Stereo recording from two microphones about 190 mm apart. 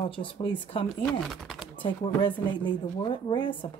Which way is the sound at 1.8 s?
25° left (ahead or behind).